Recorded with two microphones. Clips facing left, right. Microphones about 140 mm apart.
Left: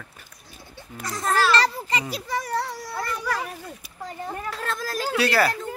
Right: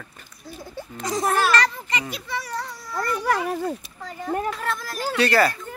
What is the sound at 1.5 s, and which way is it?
Speech, 35° left (ahead or behind).